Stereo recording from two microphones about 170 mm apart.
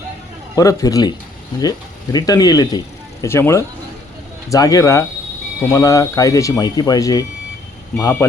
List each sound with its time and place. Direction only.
0.5 s speech: 20° left (ahead or behind)
2.1 s speech: 20° left (ahead or behind)